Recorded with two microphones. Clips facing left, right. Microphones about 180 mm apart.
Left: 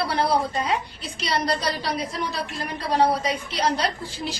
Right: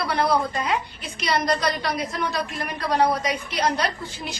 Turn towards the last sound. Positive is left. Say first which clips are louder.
# left 1 dB
turn(degrees=30)  # may be behind; listen again after turning